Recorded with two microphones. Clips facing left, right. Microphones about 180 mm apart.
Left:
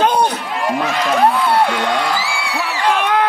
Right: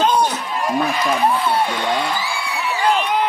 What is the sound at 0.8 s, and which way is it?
A man's voice, 70° left (ahead or behind).